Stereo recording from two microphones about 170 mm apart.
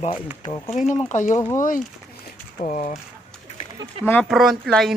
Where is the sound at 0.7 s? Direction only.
45° left (ahead or behind).